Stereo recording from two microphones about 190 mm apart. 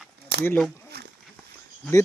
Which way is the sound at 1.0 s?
55° right (ahead or behind).